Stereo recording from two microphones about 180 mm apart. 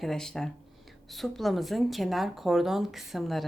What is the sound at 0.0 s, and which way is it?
Speech, centre (ahead or behind).